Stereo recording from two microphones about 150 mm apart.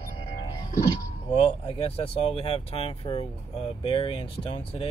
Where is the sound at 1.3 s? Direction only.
35° left (ahead or behind).